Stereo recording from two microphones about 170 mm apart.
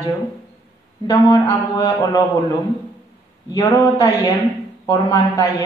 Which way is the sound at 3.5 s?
25° left (ahead or behind).